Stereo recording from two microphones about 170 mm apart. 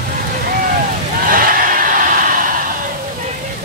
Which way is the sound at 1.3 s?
55° right (ahead or behind).